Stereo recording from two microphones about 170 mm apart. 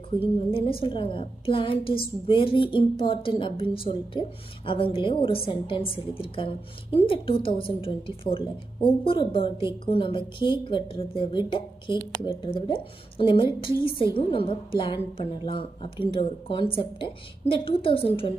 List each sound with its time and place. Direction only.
0.2 s a woman's voice: 35° left (ahead or behind)